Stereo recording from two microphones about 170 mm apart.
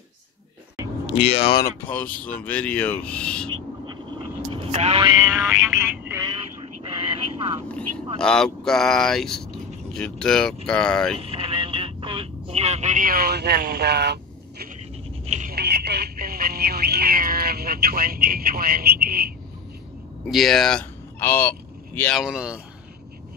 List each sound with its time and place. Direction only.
1.1 s speech: 35° left (ahead or behind)
1.6 s speech: 10° left (ahead or behind)
3.4 s owl: 25° right (ahead or behind)
4.5 s vehicle: 35° right (ahead or behind)
5.3 s speech: 10° right (ahead or behind)
6.2 s a sound: 30° right (ahead or behind)
8.2 s speech: 5° left (ahead or behind)
11.1 s vehicle: 35° right (ahead or behind); by 14.7 s 75° right (ahead or behind)
15.2 s telephone: 45° right (ahead or behind)
15.5 s telephone: 70° right (ahead or behind)
20.2 s speech: centre (ahead or behind)
21.2 s vehicle: 15° left (ahead or behind)
22.1 s speech: 5° right (ahead or behind)